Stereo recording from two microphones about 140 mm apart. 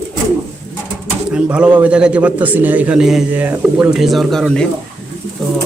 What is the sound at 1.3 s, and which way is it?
A man's voice, 10° right (ahead or behind).